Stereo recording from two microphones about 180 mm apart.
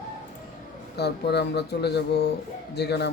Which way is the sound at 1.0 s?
65° left (ahead or behind).